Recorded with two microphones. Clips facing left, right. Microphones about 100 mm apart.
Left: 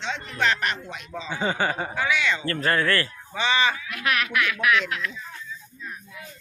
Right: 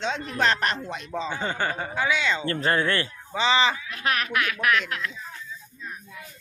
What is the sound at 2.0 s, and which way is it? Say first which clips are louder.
Speech: right 1 dB; 25° right (ahead or behind).